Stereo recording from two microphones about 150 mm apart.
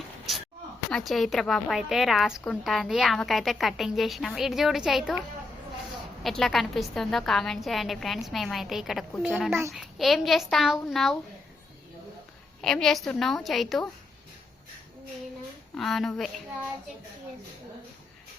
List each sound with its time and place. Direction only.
0.9 s a woman's voice: 5° left (ahead or behind)
6.2 s a woman's voice: centre (ahead or behind)
9.5 s a child's voice: 20° right (ahead or behind)
9.7 s a woman's voice: centre (ahead or behind)
12.6 s a woman's voice: 5° left (ahead or behind)
15.7 s a woman's voice: centre (ahead or behind)